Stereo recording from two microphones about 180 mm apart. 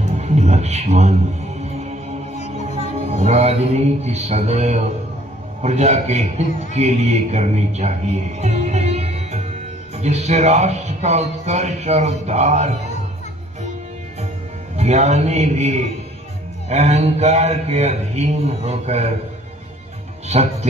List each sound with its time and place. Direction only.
0.0 s a man's voice: 40° right (ahead or behind)
2.8 s speech: 35° right (ahead or behind)
14.8 s speech: 40° right (ahead or behind)